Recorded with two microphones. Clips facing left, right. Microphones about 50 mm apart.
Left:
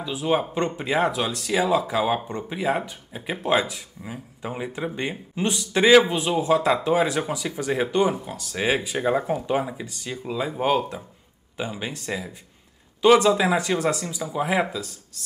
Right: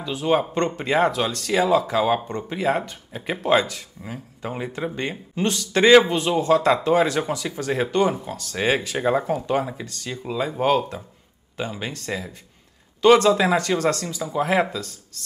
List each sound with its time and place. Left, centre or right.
0.0 s speech: centre
8.5 s speech: centre
9.2 s speech: centre
13.0 s speech: centre